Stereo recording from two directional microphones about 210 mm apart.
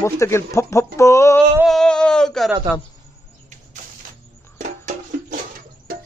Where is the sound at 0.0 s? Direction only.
15° left (ahead or behind).